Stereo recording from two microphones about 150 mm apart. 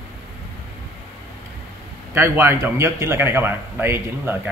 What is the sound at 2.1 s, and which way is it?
A man's voice, 15° right (ahead or behind).